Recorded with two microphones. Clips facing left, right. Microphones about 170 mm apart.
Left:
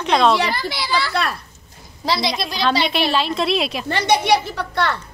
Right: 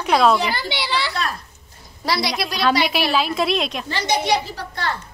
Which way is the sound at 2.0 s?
25° left (ahead or behind).